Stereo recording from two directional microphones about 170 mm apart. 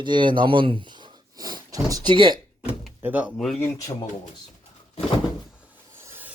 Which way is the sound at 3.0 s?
10° right (ahead or behind).